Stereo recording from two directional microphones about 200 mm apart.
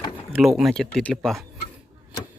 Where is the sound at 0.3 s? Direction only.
Centre (ahead or behind).